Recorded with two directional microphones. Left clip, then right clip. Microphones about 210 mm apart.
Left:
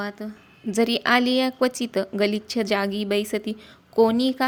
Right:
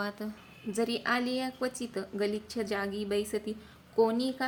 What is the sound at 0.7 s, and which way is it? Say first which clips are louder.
A woman's voice: left 10 dB; 40° left (ahead or behind).